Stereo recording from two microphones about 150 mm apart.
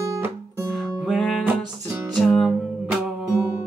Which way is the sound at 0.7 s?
Centre (ahead or behind).